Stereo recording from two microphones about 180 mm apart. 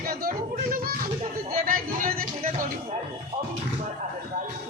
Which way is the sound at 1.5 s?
50° right (ahead or behind).